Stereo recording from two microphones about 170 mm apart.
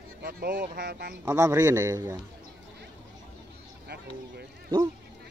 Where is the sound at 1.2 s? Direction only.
15° right (ahead or behind).